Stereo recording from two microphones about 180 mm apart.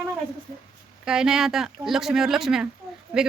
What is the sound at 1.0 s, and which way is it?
Speech, 5° right (ahead or behind).